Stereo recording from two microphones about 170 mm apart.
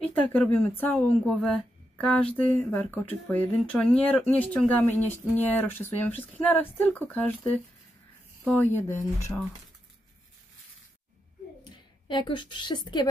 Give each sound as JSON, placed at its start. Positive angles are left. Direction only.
{"t": 0.0, "sound": "speech", "side_deg": 10}
{"t": 8.5, "sound": "speech", "side_deg": 10}
{"t": 11.6, "sound": "a woman's voice", "side_deg": 30}